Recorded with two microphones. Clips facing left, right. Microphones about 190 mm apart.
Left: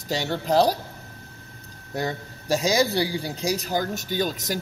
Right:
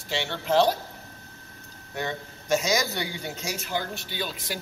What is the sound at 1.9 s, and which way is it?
Speech, 35° left (ahead or behind).